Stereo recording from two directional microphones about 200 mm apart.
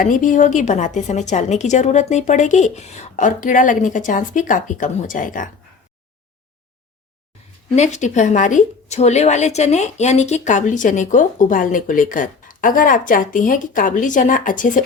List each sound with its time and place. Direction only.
0.0 s a woman's voice: 40° left (ahead or behind)
7.8 s a woman's voice: 35° left (ahead or behind)